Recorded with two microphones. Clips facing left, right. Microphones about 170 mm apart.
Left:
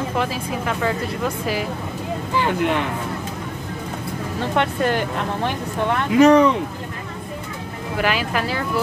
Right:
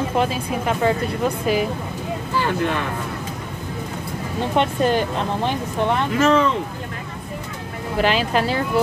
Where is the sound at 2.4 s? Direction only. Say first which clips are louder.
Left 2 dB; 15° left (ahead or behind).